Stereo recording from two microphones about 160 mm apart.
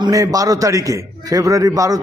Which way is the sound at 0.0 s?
20° right (ahead or behind).